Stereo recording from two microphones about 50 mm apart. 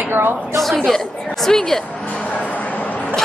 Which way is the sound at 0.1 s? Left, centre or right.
Right.